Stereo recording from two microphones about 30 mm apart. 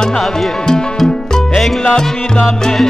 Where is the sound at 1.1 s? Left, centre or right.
Left.